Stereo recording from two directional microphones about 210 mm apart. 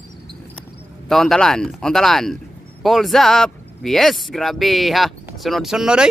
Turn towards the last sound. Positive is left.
turn(degrees=-5)  # may be behind; listen again after turning